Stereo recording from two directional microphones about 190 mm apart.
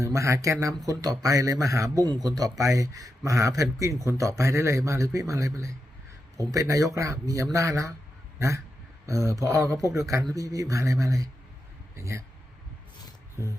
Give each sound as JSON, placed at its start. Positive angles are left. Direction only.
{"t": 0.0, "sound": "speech", "side_deg": -15}
{"t": 8.4, "sound": "a sound", "side_deg": -15}
{"t": 9.0, "sound": "speech", "side_deg": -15}